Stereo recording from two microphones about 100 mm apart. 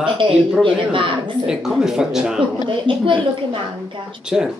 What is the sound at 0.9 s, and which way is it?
Speech, 60° right (ahead or behind).